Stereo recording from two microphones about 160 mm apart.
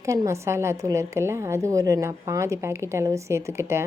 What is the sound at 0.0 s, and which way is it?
A woman's voice, 20° right (ahead or behind).